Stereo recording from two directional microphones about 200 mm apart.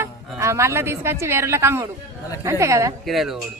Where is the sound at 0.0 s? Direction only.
15° right (ahead or behind).